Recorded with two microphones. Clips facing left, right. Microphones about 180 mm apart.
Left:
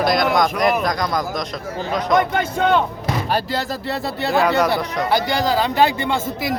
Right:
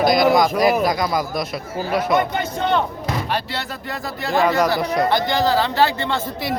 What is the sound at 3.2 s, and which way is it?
Speech, 40° left (ahead or behind).